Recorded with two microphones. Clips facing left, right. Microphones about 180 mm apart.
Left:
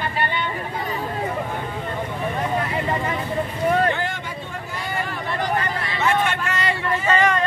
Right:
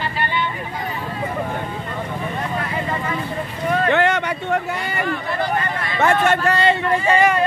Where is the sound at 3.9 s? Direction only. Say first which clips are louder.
Right 9 dB; 75° right (ahead or behind).